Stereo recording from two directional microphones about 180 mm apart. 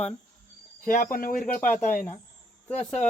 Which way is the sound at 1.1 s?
50° left (ahead or behind).